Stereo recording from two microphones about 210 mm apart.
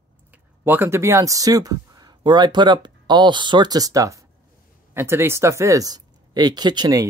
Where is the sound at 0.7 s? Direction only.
10° right (ahead or behind).